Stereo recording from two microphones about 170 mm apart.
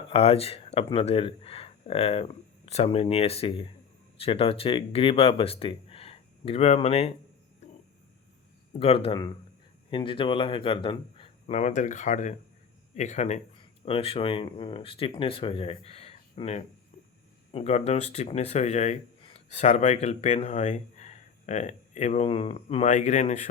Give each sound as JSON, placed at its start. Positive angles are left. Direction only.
{"t": 0.1, "sound": "speech", "side_deg": 35}
{"t": 8.8, "sound": "speech", "side_deg": 35}
{"t": 11.5, "sound": "speech", "side_deg": 45}